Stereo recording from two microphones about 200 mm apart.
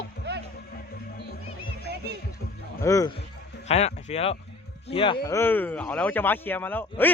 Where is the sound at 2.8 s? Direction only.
15° left (ahead or behind).